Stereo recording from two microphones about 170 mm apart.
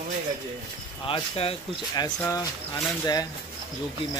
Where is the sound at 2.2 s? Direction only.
20° left (ahead or behind).